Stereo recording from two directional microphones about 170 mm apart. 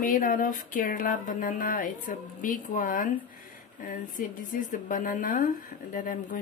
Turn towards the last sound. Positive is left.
turn(degrees=55)  # may be behind; listen again after turning